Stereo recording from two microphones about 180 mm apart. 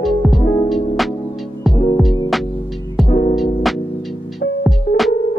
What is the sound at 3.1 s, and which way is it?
Music, 40° left (ahead or behind).